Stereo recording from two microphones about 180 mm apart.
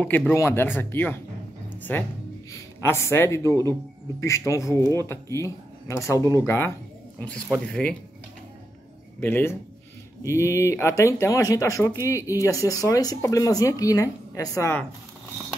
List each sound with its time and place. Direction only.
0.3 s speech: 15° left (ahead or behind)
9.2 s speech: 10° left (ahead or behind)